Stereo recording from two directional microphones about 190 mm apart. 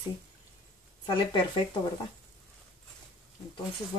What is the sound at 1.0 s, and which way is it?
Speech, 25° left (ahead or behind).